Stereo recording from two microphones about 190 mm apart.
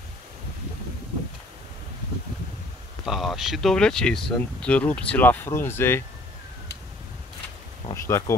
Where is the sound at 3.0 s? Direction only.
Centre (ahead or behind).